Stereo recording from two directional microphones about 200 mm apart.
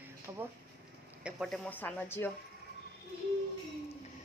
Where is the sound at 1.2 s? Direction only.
Centre (ahead or behind).